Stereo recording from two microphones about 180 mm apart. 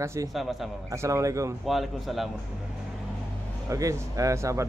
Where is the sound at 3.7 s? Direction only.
15° right (ahead or behind).